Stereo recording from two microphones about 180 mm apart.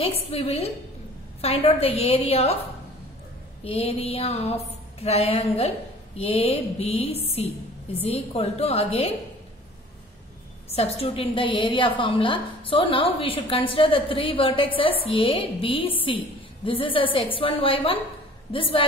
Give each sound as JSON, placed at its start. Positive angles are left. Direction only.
{"t": 0.0, "sound": "a woman's voice", "side_deg": 30}
{"t": 10.7, "sound": "a woman's voice", "side_deg": 35}